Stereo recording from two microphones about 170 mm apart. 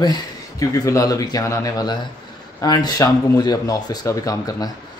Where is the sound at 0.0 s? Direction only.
20° left (ahead or behind).